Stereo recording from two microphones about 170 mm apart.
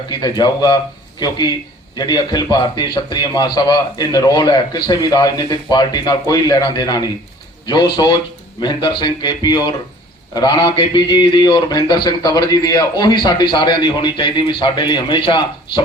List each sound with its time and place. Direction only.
0.1 s a man's voice: 25° left (ahead or behind)